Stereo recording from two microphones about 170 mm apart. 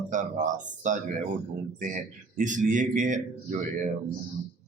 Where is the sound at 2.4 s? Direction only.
50° right (ahead or behind).